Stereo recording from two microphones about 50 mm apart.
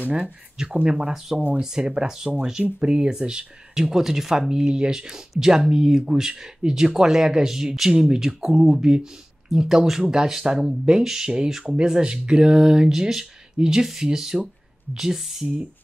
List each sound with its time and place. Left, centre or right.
0.8 s speech: centre